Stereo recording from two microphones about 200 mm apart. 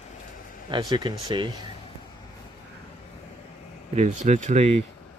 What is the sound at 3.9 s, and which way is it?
Speech, 35° right (ahead or behind).